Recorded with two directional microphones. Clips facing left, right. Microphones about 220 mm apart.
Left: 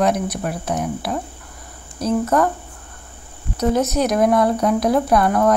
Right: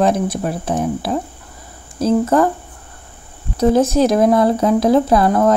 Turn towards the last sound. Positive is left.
turn(degrees=-25)  # may be behind; listen again after turning